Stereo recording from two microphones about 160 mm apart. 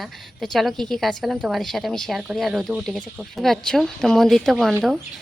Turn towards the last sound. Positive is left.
turn(degrees=0)  # may be behind; listen again after turning